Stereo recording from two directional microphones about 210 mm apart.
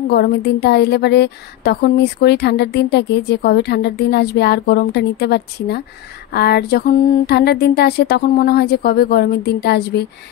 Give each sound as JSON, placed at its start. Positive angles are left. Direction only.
{"t": 0.1, "sound": "a woman's voice", "side_deg": 50}